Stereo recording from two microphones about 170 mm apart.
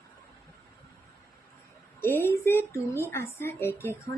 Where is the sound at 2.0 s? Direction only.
15° left (ahead or behind).